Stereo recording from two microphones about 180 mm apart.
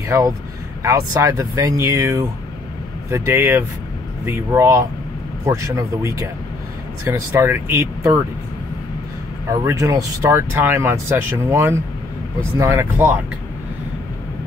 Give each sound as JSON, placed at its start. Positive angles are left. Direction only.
{"t": 0.8, "sound": "speech", "side_deg": -15}
{"t": 9.5, "sound": "speech", "side_deg": -20}